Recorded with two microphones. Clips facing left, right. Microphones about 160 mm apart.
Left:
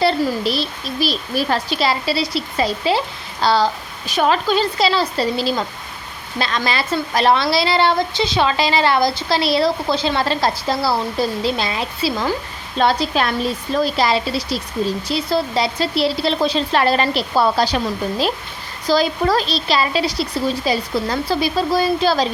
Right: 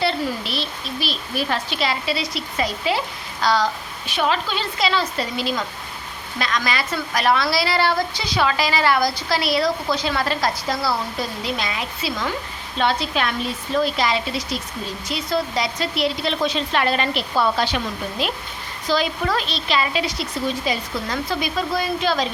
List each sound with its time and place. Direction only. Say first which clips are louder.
0.0 s a woman's voice: left 6 dB; 40° left (ahead or behind)